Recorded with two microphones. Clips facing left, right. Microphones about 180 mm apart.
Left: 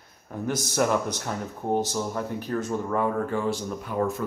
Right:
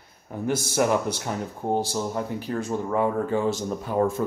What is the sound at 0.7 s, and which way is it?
Speech, 10° right (ahead or behind).